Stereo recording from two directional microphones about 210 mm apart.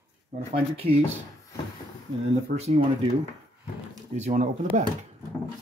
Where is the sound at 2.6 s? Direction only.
30° right (ahead or behind).